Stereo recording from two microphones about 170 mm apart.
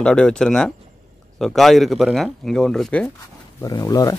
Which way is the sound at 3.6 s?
20° left (ahead or behind).